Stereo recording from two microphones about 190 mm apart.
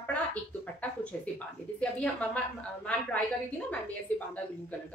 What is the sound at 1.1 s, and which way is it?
A woman's voice, 5° left (ahead or behind).